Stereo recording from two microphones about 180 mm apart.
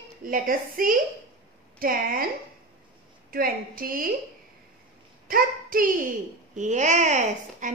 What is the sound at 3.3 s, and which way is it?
Speech, 55° right (ahead or behind).